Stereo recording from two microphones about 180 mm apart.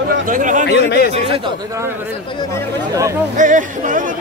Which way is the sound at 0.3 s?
45° right (ahead or behind).